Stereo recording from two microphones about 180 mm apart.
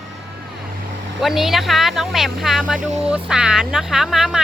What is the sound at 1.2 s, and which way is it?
A woman's voice, centre (ahead or behind).